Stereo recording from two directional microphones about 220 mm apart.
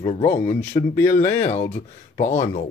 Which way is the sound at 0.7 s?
30° left (ahead or behind).